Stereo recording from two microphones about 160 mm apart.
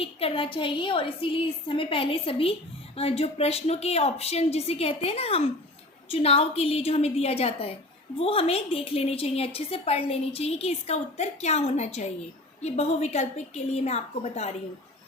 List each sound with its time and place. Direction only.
0.0 s a woman's voice: 35° left (ahead or behind)